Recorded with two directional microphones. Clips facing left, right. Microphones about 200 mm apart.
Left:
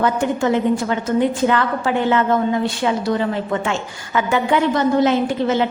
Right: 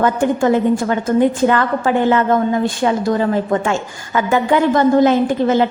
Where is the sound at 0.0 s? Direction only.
50° right (ahead or behind).